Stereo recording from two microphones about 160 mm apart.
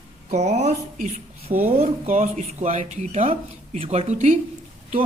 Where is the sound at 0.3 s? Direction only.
45° right (ahead or behind).